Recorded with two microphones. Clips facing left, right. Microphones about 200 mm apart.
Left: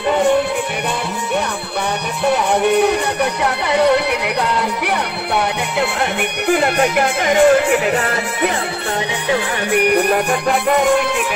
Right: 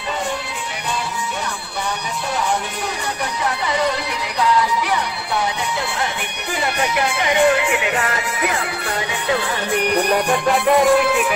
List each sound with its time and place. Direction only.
2.2 s music: 65° left (ahead or behind)
6.4 s speech: 55° left (ahead or behind); by 8.5 s 35° left (ahead or behind)
9.3 s music: 10° left (ahead or behind)
10.8 s music: centre (ahead or behind)